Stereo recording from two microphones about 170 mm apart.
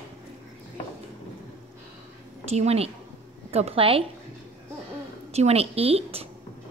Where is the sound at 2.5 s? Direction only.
40° right (ahead or behind).